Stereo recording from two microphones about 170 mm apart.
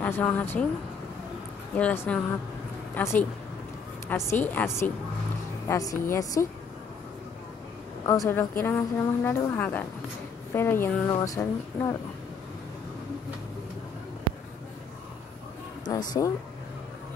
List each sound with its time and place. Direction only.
0.0 s a woman's voice: 10° left (ahead or behind)
1.8 s a woman's voice: 10° left (ahead or behind)
8.3 s a woman's voice: 15° left (ahead or behind)
15.8 s speech: 25° left (ahead or behind)